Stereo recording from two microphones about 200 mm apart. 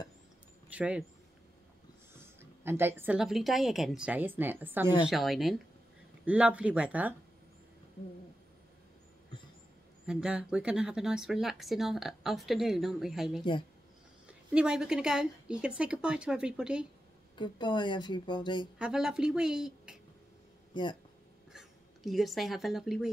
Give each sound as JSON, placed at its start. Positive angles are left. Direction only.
{"t": 0.7, "sound": "speech", "side_deg": -5}
{"t": 2.1, "sound": "a woman's voice", "side_deg": -10}
{"t": 10.0, "sound": "speech", "side_deg": -5}
{"t": 17.4, "sound": "speech", "side_deg": 25}
{"t": 18.8, "sound": "speech", "side_deg": -5}
{"t": 20.7, "sound": "speech", "side_deg": 25}
{"t": 21.5, "sound": "speech", "side_deg": 0}